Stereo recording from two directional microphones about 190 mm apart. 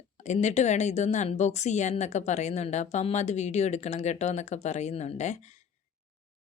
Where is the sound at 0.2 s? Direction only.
40° left (ahead or behind).